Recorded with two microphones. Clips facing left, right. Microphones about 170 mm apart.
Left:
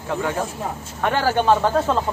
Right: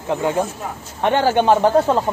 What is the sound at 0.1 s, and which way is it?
Speech, 20° right (ahead or behind).